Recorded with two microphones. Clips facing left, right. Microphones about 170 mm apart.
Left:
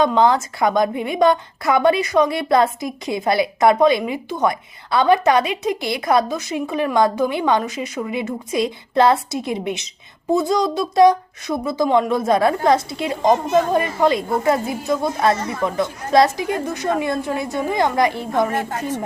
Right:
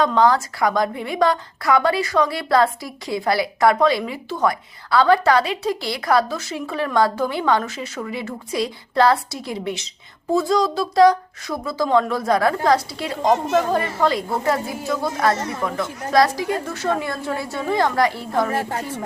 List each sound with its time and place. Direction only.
0.0 s a woman's voice: 20° left (ahead or behind)